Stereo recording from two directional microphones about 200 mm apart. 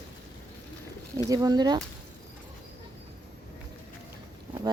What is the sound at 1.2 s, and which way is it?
Speech, 20° right (ahead or behind).